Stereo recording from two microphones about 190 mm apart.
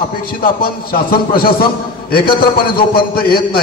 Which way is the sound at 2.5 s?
50° left (ahead or behind).